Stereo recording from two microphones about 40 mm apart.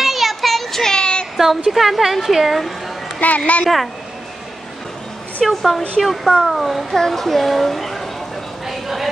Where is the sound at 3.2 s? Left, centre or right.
Left.